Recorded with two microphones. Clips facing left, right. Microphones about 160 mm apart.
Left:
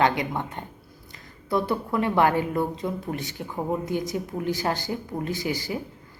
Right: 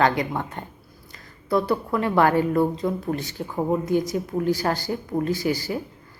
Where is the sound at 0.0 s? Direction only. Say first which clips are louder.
Right 2 dB; 20° left (ahead or behind).